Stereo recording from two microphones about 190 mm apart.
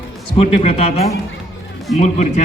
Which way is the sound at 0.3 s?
30° left (ahead or behind).